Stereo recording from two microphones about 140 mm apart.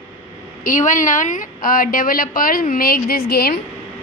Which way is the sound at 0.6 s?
65° left (ahead or behind).